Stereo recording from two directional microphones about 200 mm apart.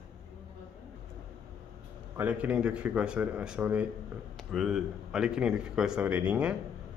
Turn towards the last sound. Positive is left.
turn(degrees=-5)  # may be behind; listen again after turning